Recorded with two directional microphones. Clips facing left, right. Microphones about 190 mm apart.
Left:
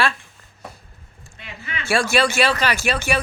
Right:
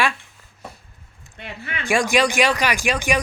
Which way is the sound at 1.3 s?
60° right (ahead or behind).